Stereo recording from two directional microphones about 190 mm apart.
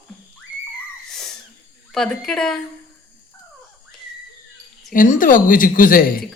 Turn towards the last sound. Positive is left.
turn(degrees=50)  # may be behind; listen again after turning